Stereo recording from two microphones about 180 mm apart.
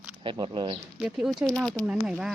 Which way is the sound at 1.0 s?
5° right (ahead or behind).